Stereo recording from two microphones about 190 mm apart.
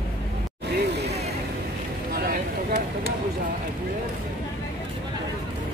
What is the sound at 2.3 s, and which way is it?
Vehicle, 50° right (ahead or behind).